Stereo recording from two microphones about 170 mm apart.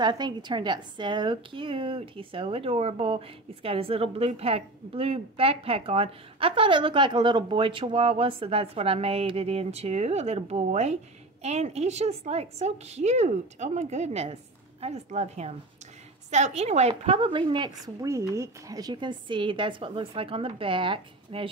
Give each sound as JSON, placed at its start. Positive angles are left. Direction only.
{"t": 0.0, "sound": "a woman's voice", "side_deg": -25}